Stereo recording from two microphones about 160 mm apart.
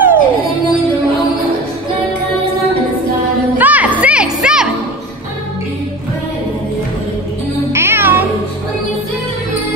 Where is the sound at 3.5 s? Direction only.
10° right (ahead or behind).